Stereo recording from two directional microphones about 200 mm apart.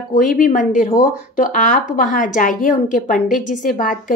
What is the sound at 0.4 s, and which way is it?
A woman's voice, 40° left (ahead or behind).